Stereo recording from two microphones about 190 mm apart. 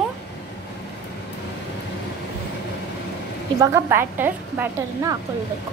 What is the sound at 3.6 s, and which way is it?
A woman's voice, 15° right (ahead or behind).